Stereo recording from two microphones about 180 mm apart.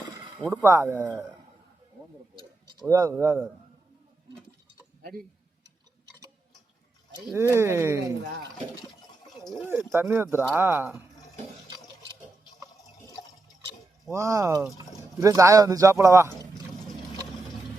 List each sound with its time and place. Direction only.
0.4 s speech: 15° right (ahead or behind)
2.7 s speech: 20° right (ahead or behind)
7.3 s speech: 15° right (ahead or behind)
9.2 s a sound: centre (ahead or behind)
9.6 s speech: 15° right (ahead or behind)
14.1 s speech: 15° right (ahead or behind)